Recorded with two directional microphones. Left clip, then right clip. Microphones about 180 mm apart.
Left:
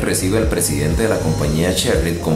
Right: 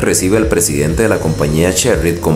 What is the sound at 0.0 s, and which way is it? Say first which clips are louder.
Speech: right 5 dB; 30° right (ahead or behind).